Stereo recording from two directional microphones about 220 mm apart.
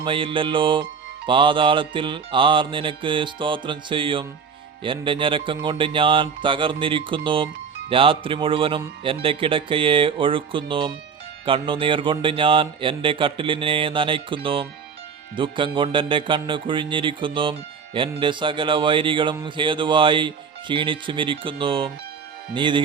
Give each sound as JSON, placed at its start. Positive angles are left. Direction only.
{"t": 0.0, "sound": "speech", "side_deg": -25}